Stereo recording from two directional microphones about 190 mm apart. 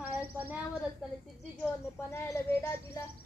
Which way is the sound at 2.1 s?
10° left (ahead or behind).